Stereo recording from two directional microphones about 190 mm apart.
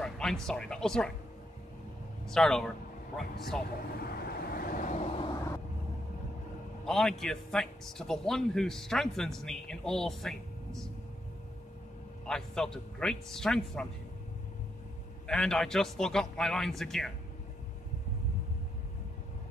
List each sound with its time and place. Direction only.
0.0 s speech: 5° left (ahead or behind)
2.2 s a man's voice: 5° left (ahead or behind)
3.7 s vehicle: 55° left (ahead or behind)
6.9 s a man's voice: 5° left (ahead or behind)
12.3 s a man's voice: 5° left (ahead or behind)
15.2 s a man's voice: 5° left (ahead or behind)